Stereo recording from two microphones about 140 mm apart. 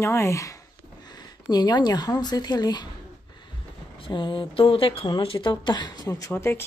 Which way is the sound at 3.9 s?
35° left (ahead or behind).